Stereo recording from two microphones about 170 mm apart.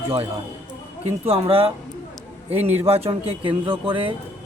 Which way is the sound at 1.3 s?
35° right (ahead or behind).